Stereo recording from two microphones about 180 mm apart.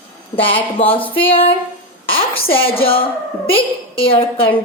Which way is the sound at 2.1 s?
30° left (ahead or behind).